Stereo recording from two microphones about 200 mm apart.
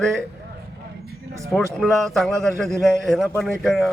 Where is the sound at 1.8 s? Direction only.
Centre (ahead or behind).